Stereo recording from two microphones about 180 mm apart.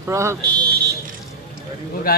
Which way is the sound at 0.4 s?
65° right (ahead or behind).